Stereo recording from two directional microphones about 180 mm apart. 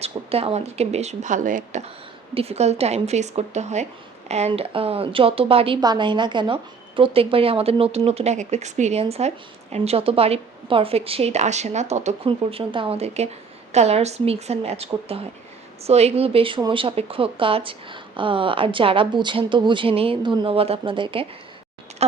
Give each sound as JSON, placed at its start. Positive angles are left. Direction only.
{"t": 0.0, "sound": "a woman's voice", "side_deg": -35}
{"t": 2.3, "sound": "a woman's voice", "side_deg": -35}